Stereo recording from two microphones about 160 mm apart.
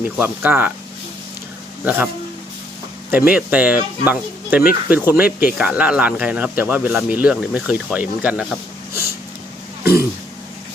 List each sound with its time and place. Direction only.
0.2 s speech: 10° right (ahead or behind)
1.8 s speech: 10° right (ahead or behind)
3.1 s speech: 10° right (ahead or behind)
8.9 s a sound: 65° left (ahead or behind)